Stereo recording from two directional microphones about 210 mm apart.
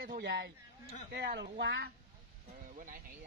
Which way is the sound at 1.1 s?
50° right (ahead or behind).